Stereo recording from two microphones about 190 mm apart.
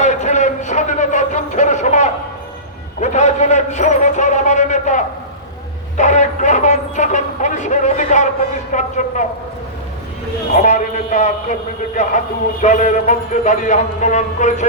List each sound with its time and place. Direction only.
0.0 s a sound: 40° left (ahead or behind)
3.0 s a man's voice: 40° left (ahead or behind)
10.5 s a man's voice: 40° left (ahead or behind)